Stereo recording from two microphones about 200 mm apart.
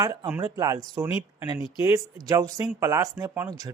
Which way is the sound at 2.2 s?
15° right (ahead or behind).